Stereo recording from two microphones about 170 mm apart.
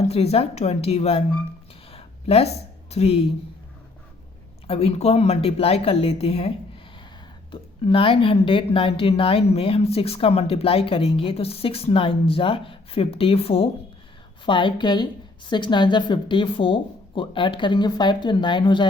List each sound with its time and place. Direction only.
0.1 s a woman's voice: 35° left (ahead or behind)
1.9 s a sound: 35° left (ahead or behind)
2.9 s a woman's voice: 35° left (ahead or behind)
4.6 s a woman's voice: 35° left (ahead or behind)
7.5 s a woman's voice: 30° left (ahead or behind)